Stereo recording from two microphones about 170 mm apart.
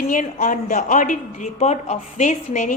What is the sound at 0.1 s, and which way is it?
A woman's voice, 50° left (ahead or behind).